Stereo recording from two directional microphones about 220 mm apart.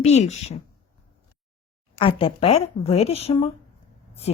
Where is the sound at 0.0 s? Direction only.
30° left (ahead or behind).